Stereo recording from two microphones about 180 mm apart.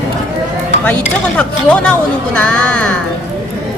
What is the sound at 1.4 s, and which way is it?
A woman's voice, 5° left (ahead or behind).